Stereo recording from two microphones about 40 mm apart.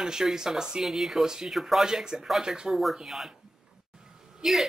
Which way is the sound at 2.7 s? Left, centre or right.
Centre.